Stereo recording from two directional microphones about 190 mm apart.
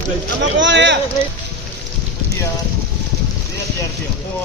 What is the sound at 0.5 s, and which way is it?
Speech, 70° right (ahead or behind).